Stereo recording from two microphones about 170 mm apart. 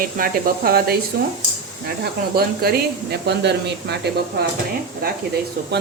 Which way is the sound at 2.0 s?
65° right (ahead or behind).